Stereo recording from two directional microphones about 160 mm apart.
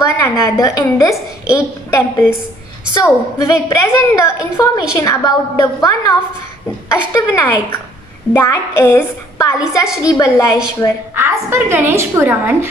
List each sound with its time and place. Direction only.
0.2 s a woman's voice: 20° left (ahead or behind)
11.1 s a woman's voice: 15° right (ahead or behind)